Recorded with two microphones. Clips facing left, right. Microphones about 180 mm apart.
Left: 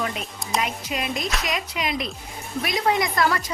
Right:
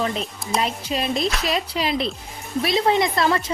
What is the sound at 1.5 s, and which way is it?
A woman's voice, 30° right (ahead or behind).